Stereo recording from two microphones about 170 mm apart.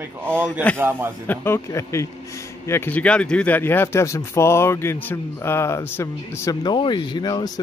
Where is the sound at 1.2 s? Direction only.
10° left (ahead or behind).